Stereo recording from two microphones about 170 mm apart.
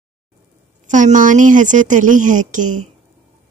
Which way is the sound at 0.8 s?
45° right (ahead or behind).